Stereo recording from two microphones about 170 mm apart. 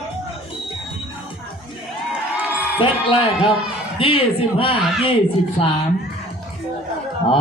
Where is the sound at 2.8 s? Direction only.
30° left (ahead or behind).